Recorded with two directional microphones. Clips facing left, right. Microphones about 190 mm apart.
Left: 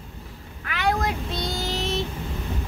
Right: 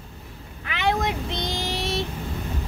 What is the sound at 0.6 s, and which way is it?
Vehicle, 20° right (ahead or behind).